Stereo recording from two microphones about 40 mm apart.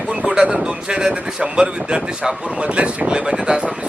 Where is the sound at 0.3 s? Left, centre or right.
Right.